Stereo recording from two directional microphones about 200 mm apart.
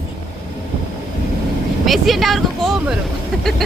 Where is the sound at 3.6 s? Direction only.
Centre (ahead or behind).